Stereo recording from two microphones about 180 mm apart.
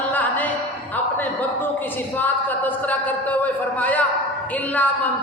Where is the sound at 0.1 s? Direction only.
10° left (ahead or behind).